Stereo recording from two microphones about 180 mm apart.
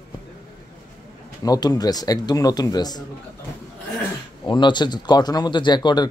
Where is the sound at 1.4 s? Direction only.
20° left (ahead or behind).